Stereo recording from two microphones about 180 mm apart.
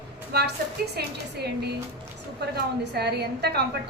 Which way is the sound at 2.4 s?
65° right (ahead or behind).